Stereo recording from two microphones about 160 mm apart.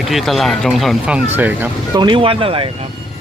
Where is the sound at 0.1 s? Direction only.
Centre (ahead or behind).